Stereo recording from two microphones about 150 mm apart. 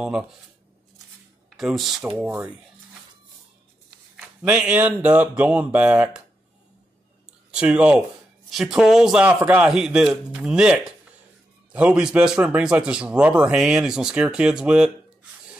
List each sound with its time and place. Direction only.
1.6 s a man's voice: centre (ahead or behind)
4.4 s speech: 5° right (ahead or behind)
7.5 s a man's voice: 5° right (ahead or behind)